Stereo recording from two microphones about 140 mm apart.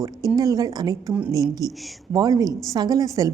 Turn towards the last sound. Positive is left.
turn(degrees=-25)  # may be behind; listen again after turning